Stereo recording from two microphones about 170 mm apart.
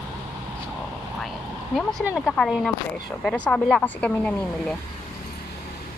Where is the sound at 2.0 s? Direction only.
5° right (ahead or behind).